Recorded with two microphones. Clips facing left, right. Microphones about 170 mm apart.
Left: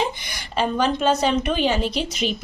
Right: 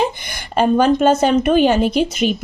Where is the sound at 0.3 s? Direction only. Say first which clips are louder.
Right 8 dB; 55° right (ahead or behind).